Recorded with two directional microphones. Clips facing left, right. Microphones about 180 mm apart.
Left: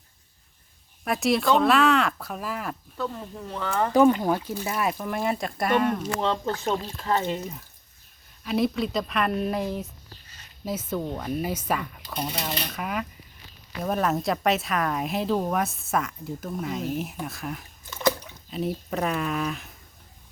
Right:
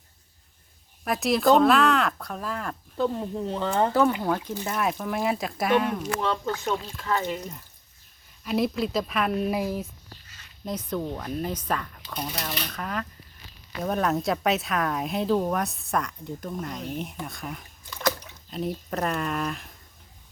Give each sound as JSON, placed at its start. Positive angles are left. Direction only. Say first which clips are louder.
{"t": 1.0, "sound": "a woman's voice", "louder": "right 1 dB", "side_deg": 0}
{"t": 3.0, "sound": "speech", "louder": "right 7 dB", "side_deg": -25}
{"t": 4.2, "sound": "a woman's voice", "louder": "left 1 dB", "side_deg": 10}
{"t": 6.1, "sound": "speech", "louder": "left 1 dB", "side_deg": 20}
{"t": 6.4, "sound": "speech", "louder": "left 1 dB", "side_deg": 30}
{"t": 8.4, "sound": "a woman's voice", "louder": "left 1 dB", "side_deg": 0}